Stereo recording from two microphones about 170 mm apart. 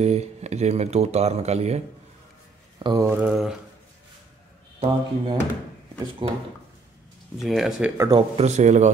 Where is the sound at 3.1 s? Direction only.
10° right (ahead or behind).